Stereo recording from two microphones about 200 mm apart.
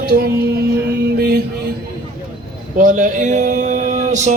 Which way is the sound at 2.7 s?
40° right (ahead or behind).